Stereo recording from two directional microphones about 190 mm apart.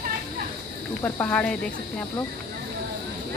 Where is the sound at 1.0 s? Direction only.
10° left (ahead or behind).